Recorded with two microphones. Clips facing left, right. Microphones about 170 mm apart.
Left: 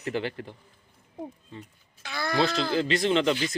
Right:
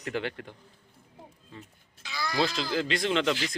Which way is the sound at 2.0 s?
55° left (ahead or behind).